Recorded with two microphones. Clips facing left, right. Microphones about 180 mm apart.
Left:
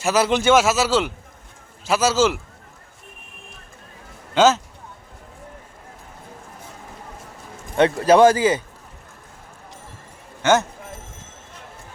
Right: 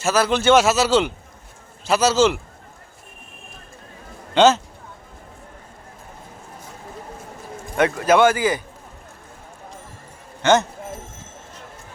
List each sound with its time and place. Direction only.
0.0 s speech: 20° left (ahead or behind)
0.5 s a man's voice: 5° left (ahead or behind)
4.4 s a man's voice: 5° left (ahead or behind)
7.8 s a man's voice: 30° left (ahead or behind)
10.4 s speech: 10° left (ahead or behind)